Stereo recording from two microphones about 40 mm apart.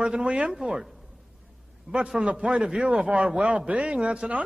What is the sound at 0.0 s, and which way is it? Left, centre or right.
Speech, right.